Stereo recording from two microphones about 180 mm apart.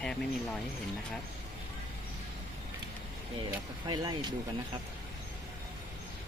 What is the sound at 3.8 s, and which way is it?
Speech, 25° right (ahead or behind).